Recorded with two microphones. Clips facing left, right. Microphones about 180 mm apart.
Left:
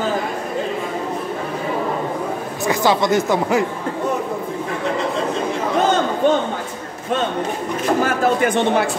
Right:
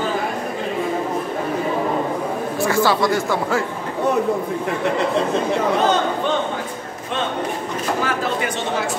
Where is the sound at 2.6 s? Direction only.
20° left (ahead or behind).